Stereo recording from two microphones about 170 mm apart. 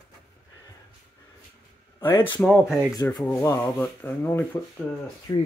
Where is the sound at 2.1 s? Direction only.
25° left (ahead or behind).